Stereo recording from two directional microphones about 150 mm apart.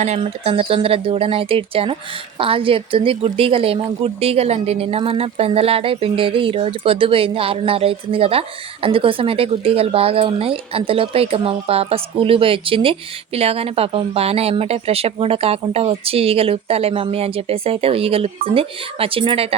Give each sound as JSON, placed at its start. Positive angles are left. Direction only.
{"t": 0.0, "sound": "a woman's voice", "side_deg": -45}